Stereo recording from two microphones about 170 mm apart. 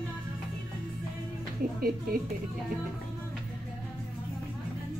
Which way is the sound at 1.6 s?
60° right (ahead or behind).